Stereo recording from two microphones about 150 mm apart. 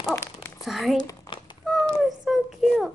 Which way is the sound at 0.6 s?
Centre (ahead or behind).